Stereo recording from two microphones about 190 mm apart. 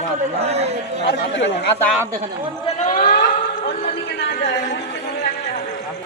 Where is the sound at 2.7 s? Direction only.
40° left (ahead or behind); by 4.8 s 60° left (ahead or behind).